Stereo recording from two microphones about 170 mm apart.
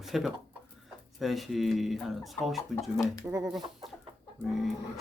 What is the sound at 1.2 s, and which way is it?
Speech, centre (ahead or behind).